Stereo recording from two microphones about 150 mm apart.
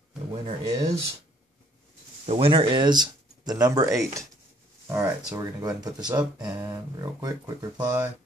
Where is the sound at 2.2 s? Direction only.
40° right (ahead or behind); by 5.9 s 20° right (ahead or behind).